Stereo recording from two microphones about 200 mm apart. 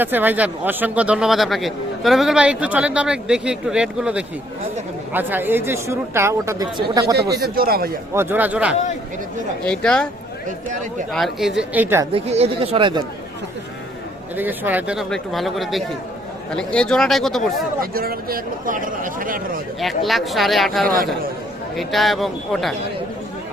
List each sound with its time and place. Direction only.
0.0 s speech: 10° right (ahead or behind)
7.2 s speech: 50° right (ahead or behind)
8.1 s speech: 10° right (ahead or behind)
9.6 s speech: 5° left (ahead or behind)
11.1 s speech: centre (ahead or behind)
12.1 s speech: 30° right (ahead or behind)
14.3 s speech: 10° right (ahead or behind)
17.9 s speech: 50° right (ahead or behind)
19.8 s speech: centre (ahead or behind)